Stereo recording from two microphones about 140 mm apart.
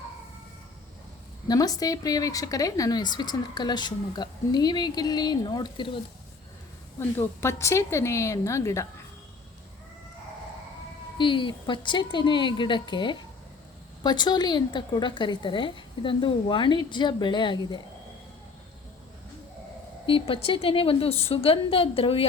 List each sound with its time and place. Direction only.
1.5 s speech: 25° left (ahead or behind)
7.2 s speech: 20° left (ahead or behind)
11.2 s a woman's voice: 35° left (ahead or behind)
20.1 s a woman's voice: 40° left (ahead or behind)